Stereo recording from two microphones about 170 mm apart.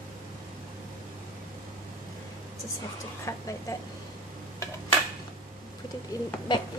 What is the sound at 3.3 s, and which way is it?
Speech, 20° left (ahead or behind).